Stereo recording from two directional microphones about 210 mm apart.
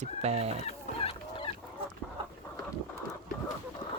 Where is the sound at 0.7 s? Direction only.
25° left (ahead or behind).